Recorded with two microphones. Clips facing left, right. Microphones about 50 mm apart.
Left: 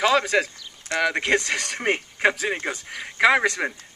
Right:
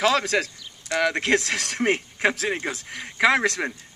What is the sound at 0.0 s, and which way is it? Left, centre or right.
Speech, centre.